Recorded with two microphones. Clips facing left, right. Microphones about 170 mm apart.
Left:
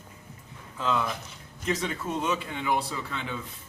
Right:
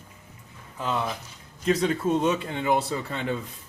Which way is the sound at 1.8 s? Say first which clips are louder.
Right 7 dB; 35° right (ahead or behind).